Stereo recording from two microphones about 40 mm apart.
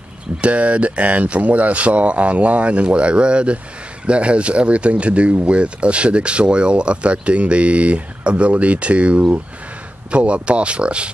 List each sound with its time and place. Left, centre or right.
0.4 s speech: right